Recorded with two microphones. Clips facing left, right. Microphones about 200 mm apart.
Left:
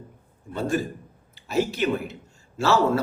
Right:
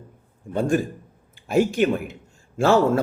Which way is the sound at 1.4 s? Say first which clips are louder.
Right 5 dB; 50° right (ahead or behind).